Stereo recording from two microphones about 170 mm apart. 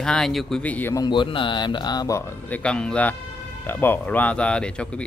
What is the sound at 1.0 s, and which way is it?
Speech, 30° left (ahead or behind).